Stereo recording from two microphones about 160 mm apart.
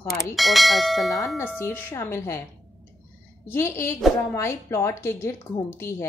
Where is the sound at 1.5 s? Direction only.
15° left (ahead or behind).